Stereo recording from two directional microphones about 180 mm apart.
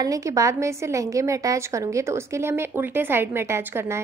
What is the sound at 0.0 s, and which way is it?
A woman's voice, 20° right (ahead or behind).